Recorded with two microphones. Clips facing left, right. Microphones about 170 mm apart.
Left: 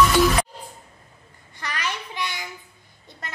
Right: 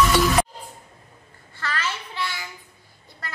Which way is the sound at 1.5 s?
15° left (ahead or behind).